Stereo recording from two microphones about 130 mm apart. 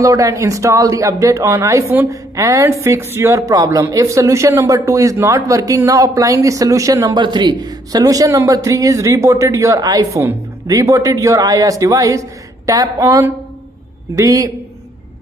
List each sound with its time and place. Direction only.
0.0 s a woman's voice: 25° right (ahead or behind)